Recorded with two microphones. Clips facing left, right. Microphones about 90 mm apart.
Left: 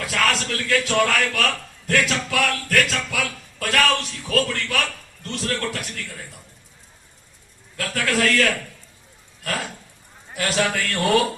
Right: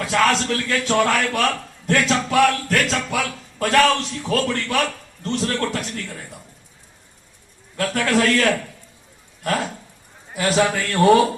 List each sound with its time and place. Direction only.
0.0 s a man's voice: 25° right (ahead or behind)
7.8 s a man's voice: 25° right (ahead or behind)
10.3 s a man's voice: 20° right (ahead or behind)